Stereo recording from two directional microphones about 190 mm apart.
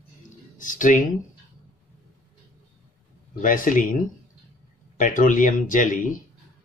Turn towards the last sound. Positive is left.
turn(degrees=45)  # may be behind; listen again after turning